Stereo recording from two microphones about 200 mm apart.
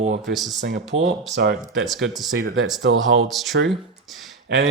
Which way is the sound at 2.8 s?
65° right (ahead or behind).